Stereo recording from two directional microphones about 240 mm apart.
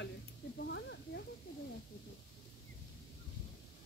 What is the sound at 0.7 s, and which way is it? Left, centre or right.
Snake, left.